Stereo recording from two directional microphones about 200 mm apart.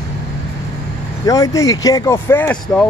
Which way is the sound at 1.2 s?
15° left (ahead or behind).